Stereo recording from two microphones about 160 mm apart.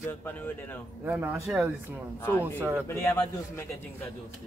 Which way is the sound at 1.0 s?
10° right (ahead or behind).